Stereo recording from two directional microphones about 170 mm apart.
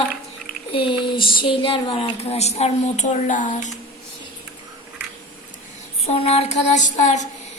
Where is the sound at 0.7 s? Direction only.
30° left (ahead or behind); by 3.7 s 45° left (ahead or behind).